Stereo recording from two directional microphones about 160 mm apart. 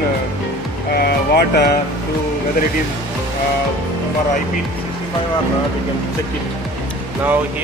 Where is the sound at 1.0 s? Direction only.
90° left.